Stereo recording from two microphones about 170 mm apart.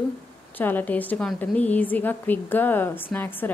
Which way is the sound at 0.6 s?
10° left (ahead or behind).